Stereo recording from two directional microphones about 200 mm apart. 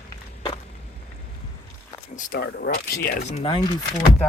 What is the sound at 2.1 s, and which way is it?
Speech, 45° left (ahead or behind).